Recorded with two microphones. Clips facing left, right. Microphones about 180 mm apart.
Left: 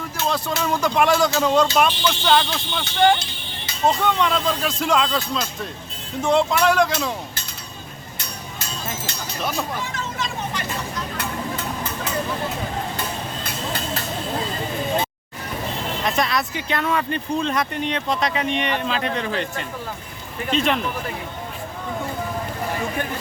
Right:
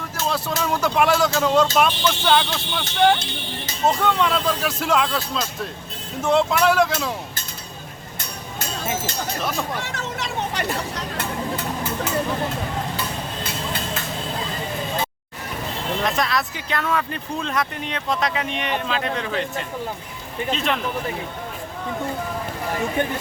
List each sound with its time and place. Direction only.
0.3 s speech: 5° right (ahead or behind)
3.8 s speech: centre (ahead or behind)
8.5 s music: 55° right (ahead or behind)
9.4 s speech: centre (ahead or behind)
9.8 s speech: 75° right (ahead or behind)
16.0 s speech: centre (ahead or behind)
23.0 s speech: 20° right (ahead or behind)